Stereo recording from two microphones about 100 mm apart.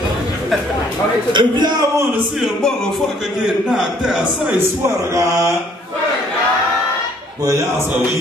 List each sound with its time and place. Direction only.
1.3 s speech: 50° right (ahead or behind)
3.4 s a man's voice: 5° right (ahead or behind)
4.8 s mantra: 30° right (ahead or behind)